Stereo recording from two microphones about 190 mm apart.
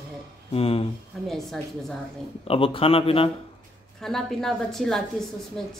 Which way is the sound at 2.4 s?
30° left (ahead or behind).